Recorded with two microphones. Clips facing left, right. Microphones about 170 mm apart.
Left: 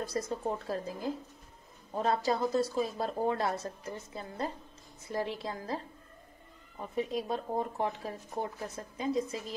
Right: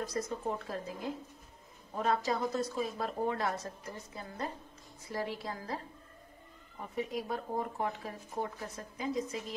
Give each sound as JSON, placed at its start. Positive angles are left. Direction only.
{"t": 0.2, "sound": "speech", "side_deg": 25}
{"t": 7.0, "sound": "speech", "side_deg": 25}